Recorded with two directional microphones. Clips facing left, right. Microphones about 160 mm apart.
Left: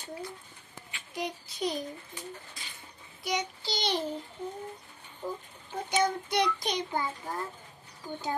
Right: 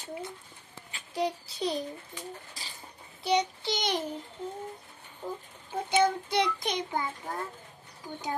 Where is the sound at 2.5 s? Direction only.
35° right (ahead or behind).